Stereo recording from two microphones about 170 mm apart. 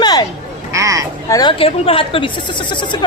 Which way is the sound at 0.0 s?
25° left (ahead or behind).